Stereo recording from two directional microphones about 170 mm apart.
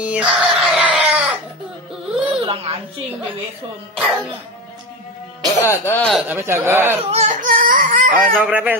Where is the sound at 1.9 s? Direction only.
5° right (ahead or behind).